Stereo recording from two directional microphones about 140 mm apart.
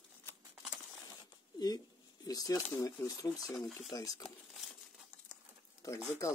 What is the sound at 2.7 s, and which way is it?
Speech, 15° left (ahead or behind).